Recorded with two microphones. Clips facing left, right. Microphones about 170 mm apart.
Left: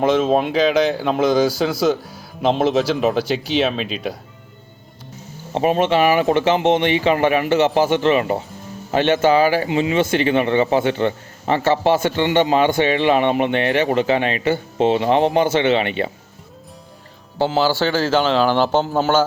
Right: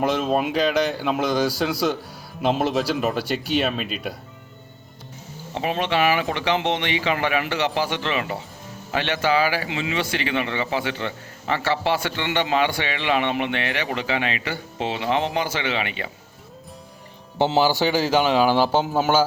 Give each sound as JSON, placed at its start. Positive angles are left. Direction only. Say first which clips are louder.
{"t": 0.0, "sound": "speech", "louder": "left 5 dB", "side_deg": 0}
{"t": 5.5, "sound": "speech", "louder": "left 6 dB", "side_deg": 45}
{"t": 15.4, "sound": "speech", "louder": "left 9 dB", "side_deg": 25}
{"t": 17.3, "sound": "speech", "louder": "left 1 dB", "side_deg": -20}